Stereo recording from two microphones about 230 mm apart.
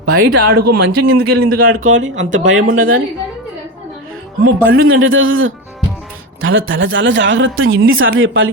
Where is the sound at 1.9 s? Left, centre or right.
Right.